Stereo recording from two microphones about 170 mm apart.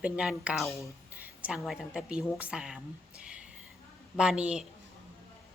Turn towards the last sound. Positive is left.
turn(degrees=-5)  # may be behind; listen again after turning